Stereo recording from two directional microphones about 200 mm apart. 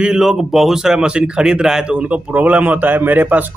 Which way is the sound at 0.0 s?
5° right (ahead or behind).